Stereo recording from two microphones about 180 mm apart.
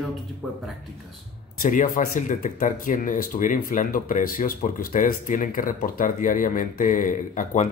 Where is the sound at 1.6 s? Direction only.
45° left (ahead or behind).